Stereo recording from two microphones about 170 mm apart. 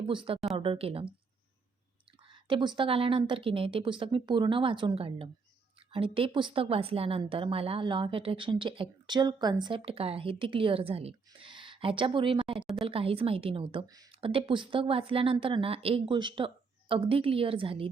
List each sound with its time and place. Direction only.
0.1 s a woman's voice: 30° right (ahead or behind)
2.3 s a woman's voice: 30° right (ahead or behind)